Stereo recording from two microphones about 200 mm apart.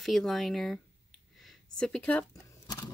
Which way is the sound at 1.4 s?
5° left (ahead or behind).